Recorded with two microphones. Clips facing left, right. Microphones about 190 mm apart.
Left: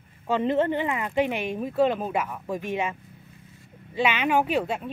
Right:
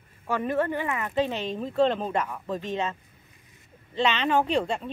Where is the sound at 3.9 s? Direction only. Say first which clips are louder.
Left 1 dB; 10° left (ahead or behind).